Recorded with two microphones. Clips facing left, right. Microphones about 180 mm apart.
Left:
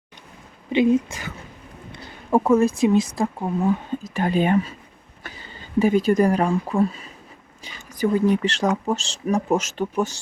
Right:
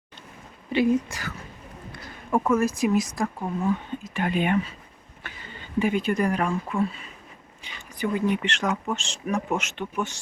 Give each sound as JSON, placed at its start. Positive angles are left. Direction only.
{"t": 0.7, "sound": "speech", "side_deg": 20}